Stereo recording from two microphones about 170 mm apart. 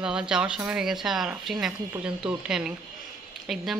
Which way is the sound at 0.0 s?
5° right (ahead or behind).